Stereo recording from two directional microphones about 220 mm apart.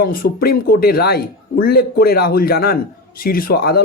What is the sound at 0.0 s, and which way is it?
Speech, 40° left (ahead or behind).